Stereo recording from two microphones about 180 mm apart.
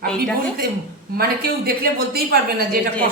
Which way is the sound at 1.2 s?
60° right (ahead or behind).